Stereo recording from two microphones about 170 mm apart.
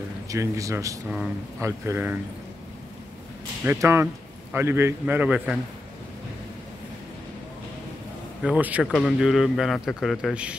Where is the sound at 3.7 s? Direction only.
15° right (ahead or behind).